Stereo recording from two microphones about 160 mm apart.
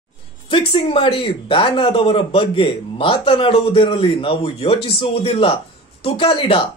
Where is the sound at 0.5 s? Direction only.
35° left (ahead or behind).